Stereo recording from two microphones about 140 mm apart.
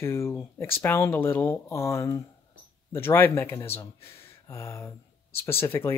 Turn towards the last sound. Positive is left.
turn(degrees=20)  # may be behind; listen again after turning